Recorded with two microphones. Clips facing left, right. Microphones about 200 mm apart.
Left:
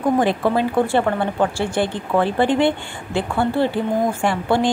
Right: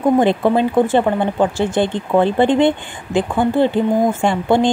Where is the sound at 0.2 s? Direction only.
20° right (ahead or behind).